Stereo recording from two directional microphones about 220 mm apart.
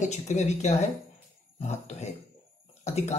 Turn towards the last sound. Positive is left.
turn(degrees=30)  # may be behind; listen again after turning